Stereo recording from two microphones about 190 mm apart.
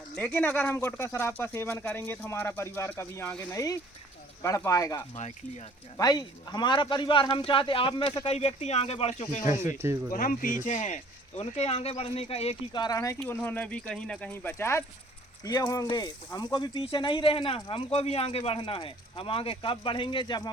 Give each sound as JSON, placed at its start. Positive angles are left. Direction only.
{"t": 0.1, "sound": "speech", "side_deg": 10}
{"t": 5.1, "sound": "speech", "side_deg": 40}
{"t": 6.0, "sound": "speech", "side_deg": 20}
{"t": 9.7, "sound": "speech", "side_deg": -15}
{"t": 10.1, "sound": "speech", "side_deg": 45}